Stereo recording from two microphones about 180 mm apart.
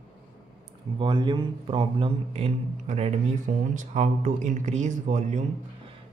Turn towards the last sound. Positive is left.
turn(degrees=-40)  # may be behind; listen again after turning